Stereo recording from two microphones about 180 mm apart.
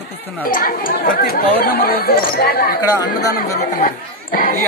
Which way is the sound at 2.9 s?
20° left (ahead or behind).